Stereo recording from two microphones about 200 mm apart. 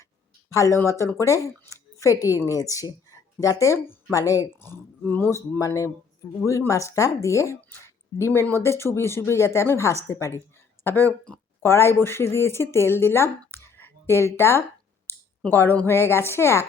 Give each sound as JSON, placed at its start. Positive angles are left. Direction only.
{"t": 0.5, "sound": "a woman's voice", "side_deg": 15}